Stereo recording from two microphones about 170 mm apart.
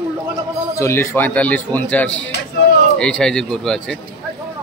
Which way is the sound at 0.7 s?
15° left (ahead or behind).